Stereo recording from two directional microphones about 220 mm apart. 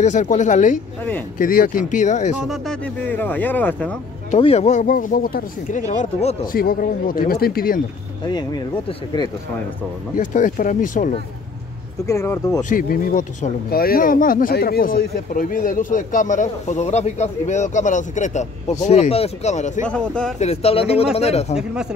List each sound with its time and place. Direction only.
0.0 s speech: 35° left (ahead or behind)
2.4 s speech: centre (ahead or behind)
4.3 s speech: 25° left (ahead or behind)
10.1 s speech: 35° left (ahead or behind)
12.1 s speech: 15° left (ahead or behind)
12.6 s speech: 40° left (ahead or behind)
19.9 s speech: 5° left (ahead or behind)
20.3 s speech: 30° left (ahead or behind)